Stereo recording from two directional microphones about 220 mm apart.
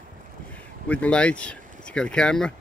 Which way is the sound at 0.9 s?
5° left (ahead or behind).